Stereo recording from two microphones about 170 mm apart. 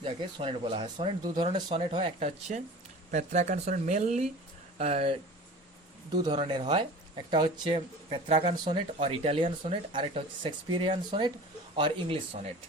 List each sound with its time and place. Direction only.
0.0 s speech: 30° right (ahead or behind)
2.1 s speech: 45° right (ahead or behind)
6.4 s speech: 30° right (ahead or behind)